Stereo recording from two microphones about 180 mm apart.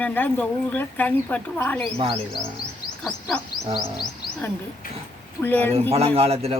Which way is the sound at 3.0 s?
Centre (ahead or behind).